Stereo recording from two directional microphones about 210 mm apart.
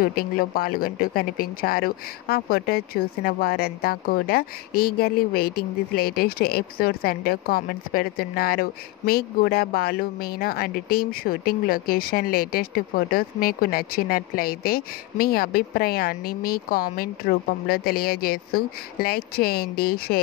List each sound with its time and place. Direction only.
0.0 s speech: 45° left (ahead or behind)